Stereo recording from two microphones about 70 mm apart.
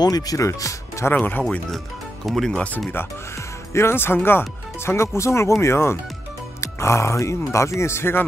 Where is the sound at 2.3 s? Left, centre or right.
Centre.